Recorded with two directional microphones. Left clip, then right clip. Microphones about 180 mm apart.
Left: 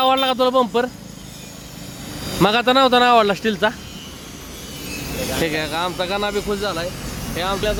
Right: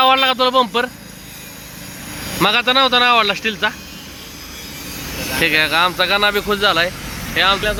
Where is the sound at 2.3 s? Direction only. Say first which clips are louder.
Right 1 dB; 25° left (ahead or behind).